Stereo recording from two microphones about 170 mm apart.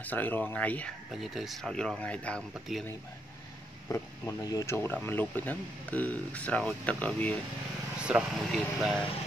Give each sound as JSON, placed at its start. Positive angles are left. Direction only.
{"t": 0.0, "sound": "speech", "side_deg": 10}
{"t": 3.9, "sound": "speech", "side_deg": 20}
{"t": 8.1, "sound": "speech", "side_deg": -5}